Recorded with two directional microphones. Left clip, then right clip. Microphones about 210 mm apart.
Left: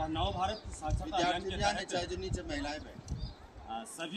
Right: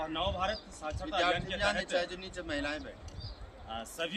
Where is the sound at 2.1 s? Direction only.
5° right (ahead or behind).